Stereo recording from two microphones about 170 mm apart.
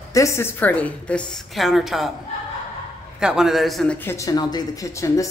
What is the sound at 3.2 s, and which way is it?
Speech, 5° right (ahead or behind).